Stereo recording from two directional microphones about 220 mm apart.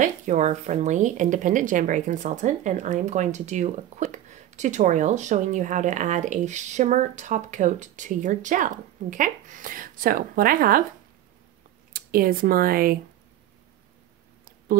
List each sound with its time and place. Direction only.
0.0 s speech: 35° right (ahead or behind)
11.9 s speech: 40° right (ahead or behind)